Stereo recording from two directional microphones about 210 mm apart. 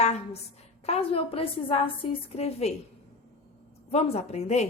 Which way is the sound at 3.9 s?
30° left (ahead or behind).